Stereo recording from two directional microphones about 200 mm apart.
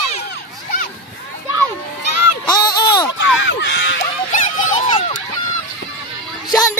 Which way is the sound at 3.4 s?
65° left (ahead or behind).